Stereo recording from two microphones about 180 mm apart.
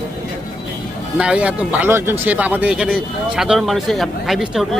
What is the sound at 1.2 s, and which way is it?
Speech, 5° right (ahead or behind).